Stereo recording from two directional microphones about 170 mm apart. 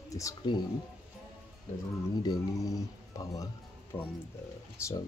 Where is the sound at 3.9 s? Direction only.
10° left (ahead or behind).